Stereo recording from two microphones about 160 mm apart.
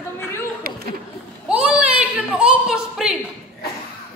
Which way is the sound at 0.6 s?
65° right (ahead or behind).